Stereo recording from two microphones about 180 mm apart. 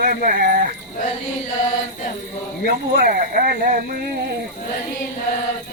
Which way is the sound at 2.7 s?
50° right (ahead or behind).